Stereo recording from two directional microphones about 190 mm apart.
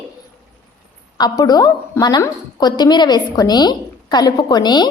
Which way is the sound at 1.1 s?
20° left (ahead or behind).